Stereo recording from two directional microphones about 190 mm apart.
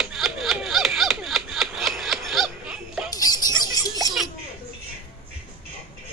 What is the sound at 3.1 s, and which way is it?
Music, 20° left (ahead or behind).